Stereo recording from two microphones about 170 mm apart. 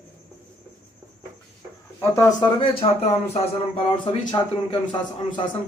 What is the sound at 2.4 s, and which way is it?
A man's voice, 30° left (ahead or behind).